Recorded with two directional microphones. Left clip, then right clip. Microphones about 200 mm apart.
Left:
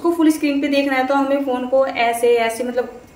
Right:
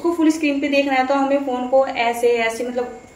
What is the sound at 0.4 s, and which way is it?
A woman's voice, 20° left (ahead or behind).